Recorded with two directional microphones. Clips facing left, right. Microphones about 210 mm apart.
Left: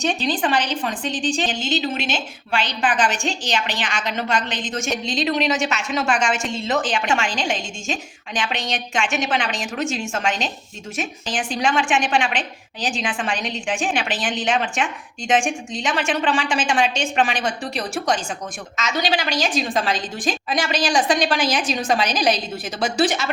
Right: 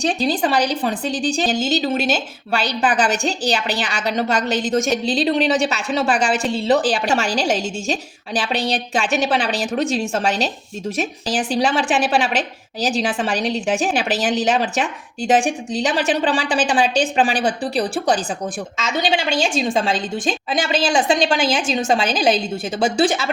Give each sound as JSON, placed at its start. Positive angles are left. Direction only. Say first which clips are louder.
{"t": 0.0, "sound": "a woman's voice", "louder": "right 3 dB", "side_deg": -35}